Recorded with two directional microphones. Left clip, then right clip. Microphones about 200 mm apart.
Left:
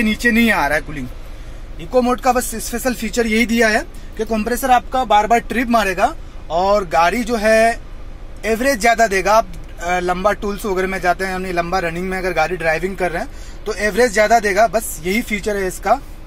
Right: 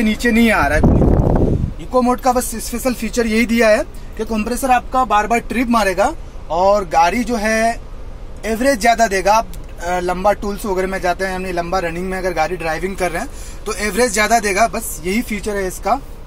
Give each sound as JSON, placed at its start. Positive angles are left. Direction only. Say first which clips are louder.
{"t": 0.0, "sound": "speech", "louder": "even", "side_deg": 20}
{"t": 1.9, "sound": "speech", "louder": "even", "side_deg": 15}